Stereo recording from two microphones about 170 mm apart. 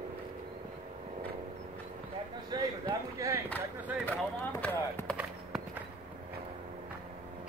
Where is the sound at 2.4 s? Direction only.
20° right (ahead or behind).